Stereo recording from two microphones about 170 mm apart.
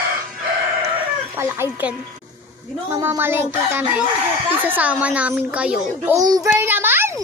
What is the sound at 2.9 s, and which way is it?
Speech, 15° right (ahead or behind).